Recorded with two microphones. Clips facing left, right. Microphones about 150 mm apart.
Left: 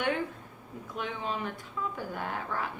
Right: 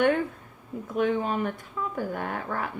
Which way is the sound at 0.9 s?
50° right (ahead or behind).